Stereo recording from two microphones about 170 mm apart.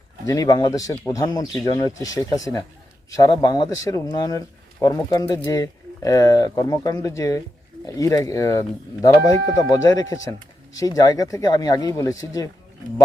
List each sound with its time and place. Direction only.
0.3 s speech: 20° left (ahead or behind)